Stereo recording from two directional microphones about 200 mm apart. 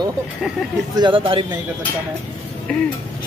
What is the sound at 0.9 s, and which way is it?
Speech, 25° right (ahead or behind).